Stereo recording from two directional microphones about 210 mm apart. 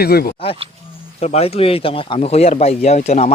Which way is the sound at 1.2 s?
30° left (ahead or behind).